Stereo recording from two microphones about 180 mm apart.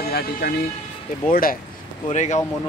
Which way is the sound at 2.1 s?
40° left (ahead or behind).